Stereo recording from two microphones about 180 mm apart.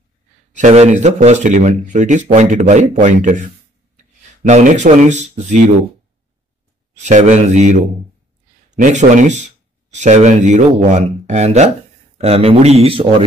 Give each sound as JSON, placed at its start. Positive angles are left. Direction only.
{"t": 0.5, "sound": "speech", "side_deg": -40}
{"t": 4.5, "sound": "speech", "side_deg": -40}
{"t": 7.0, "sound": "speech", "side_deg": -40}